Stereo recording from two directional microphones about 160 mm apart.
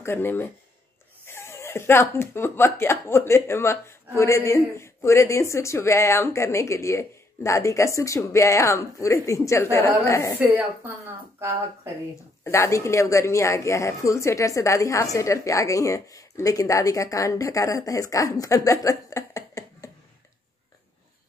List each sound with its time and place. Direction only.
0.0 s speech: 15° left (ahead or behind)
10.4 s a woman's voice: 10° right (ahead or behind)
12.4 s a woman's voice: 20° left (ahead or behind)